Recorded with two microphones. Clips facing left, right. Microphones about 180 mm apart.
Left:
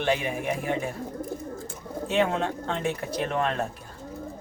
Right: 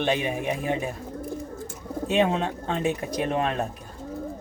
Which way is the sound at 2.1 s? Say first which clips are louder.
Right 2 dB; 20° right (ahead or behind).